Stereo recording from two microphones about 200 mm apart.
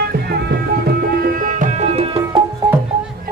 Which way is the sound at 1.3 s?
40° right (ahead or behind).